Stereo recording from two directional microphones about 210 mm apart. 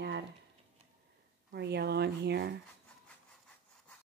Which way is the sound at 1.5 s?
55° right (ahead or behind).